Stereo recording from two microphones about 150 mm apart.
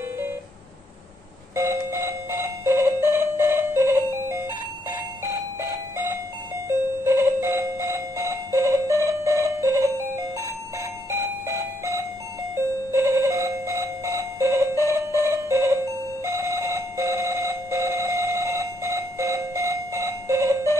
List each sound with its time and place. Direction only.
1.5 s doorbell: 15° right (ahead or behind)
12.9 s alarm clock: 20° right (ahead or behind)
16.3 s doorbell: 20° right (ahead or behind)